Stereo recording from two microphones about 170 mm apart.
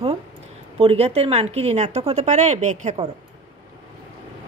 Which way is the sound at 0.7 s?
35° right (ahead or behind).